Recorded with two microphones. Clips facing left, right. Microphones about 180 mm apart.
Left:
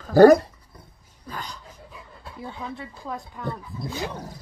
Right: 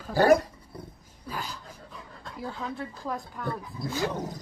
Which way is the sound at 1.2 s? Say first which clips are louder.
Even; 5° right (ahead or behind).